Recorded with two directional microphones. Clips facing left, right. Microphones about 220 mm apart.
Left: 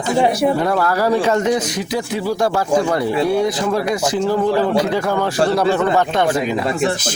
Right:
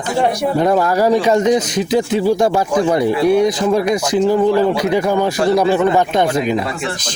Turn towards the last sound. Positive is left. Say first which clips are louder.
# right 2 dB
turn(degrees=-15)  # may be behind; listen again after turning